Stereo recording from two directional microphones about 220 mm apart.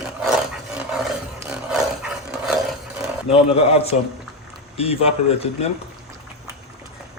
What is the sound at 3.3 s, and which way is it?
Speech, 25° left (ahead or behind).